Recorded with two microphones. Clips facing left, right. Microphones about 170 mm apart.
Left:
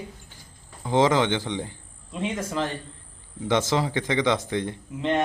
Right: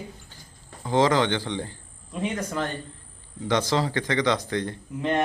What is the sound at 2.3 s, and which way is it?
Speech, centre (ahead or behind).